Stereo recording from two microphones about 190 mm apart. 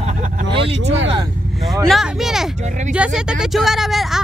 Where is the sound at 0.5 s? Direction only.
30° right (ahead or behind).